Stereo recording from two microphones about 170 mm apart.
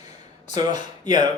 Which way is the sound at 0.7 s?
25° right (ahead or behind).